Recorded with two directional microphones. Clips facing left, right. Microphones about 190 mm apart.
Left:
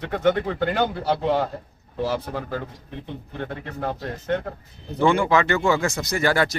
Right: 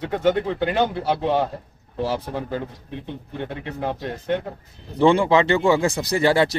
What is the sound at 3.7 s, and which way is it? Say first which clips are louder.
Speech: right 1 dB; 5° right (ahead or behind).